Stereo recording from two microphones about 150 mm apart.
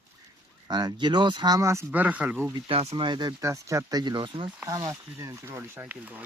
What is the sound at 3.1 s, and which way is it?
Speech, 30° right (ahead or behind).